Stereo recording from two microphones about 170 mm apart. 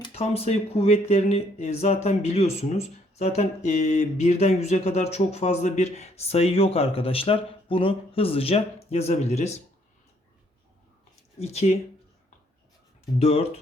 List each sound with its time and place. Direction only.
0.0 s speech: 35° left (ahead or behind)
11.3 s speech: 40° left (ahead or behind)
13.1 s speech: 35° left (ahead or behind)